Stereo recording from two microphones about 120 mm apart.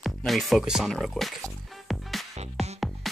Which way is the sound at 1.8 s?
Centre (ahead or behind).